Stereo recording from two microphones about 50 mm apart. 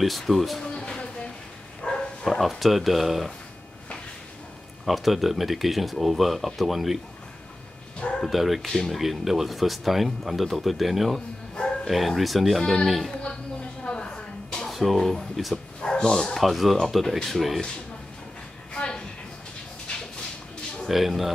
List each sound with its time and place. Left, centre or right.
0.0 s speech: centre
0.7 s a sound: left
1.8 s bow-wow: centre
2.2 s speech: centre
4.8 s speech: centre
8.2 s speech: centre
11.5 s music: centre
11.9 s speech: centre
13.8 s a sound: centre
14.7 s speech: centre
15.5 s bow-wow: centre
16.3 s speech: centre
18.7 s a sound: centre
20.9 s speech: centre